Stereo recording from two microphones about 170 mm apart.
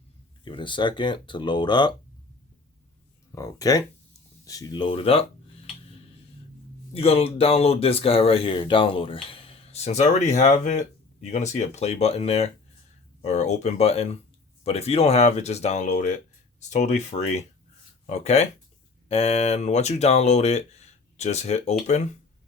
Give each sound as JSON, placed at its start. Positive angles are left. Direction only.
{"t": 0.4, "sound": "speech", "side_deg": 30}
{"t": 3.3, "sound": "speech", "side_deg": 20}
{"t": 6.9, "sound": "speech", "side_deg": 35}